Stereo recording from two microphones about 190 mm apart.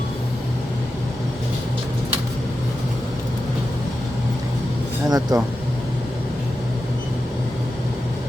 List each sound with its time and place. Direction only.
5.0 s speech: 20° right (ahead or behind)